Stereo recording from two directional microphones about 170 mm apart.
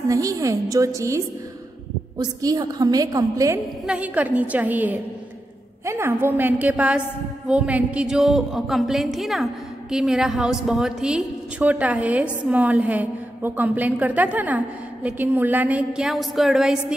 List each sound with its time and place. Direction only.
0.1 s a woman's voice: 20° right (ahead or behind)
3.8 s a woman's voice: 10° right (ahead or behind)